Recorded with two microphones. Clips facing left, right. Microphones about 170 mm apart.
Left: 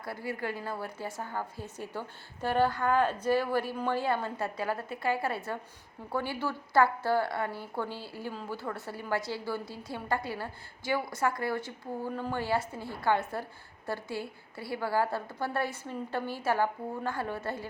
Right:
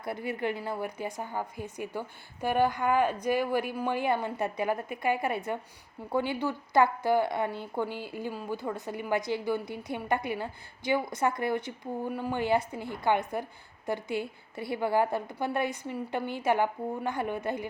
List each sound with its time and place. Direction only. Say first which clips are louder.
0.0 s a woman's voice: right 3 dB; 20° right (ahead or behind)